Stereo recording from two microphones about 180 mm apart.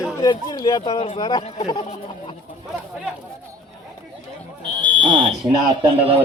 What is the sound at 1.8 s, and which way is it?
Speech, 40° left (ahead or behind).